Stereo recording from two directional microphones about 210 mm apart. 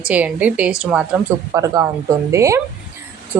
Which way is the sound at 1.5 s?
15° right (ahead or behind).